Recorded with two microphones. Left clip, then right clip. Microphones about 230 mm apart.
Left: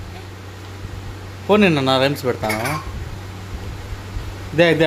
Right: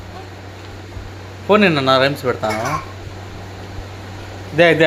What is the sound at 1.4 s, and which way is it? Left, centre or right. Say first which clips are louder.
Speech: right 2 dB; centre.